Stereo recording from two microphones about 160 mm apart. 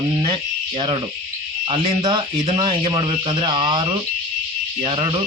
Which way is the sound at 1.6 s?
35° right (ahead or behind).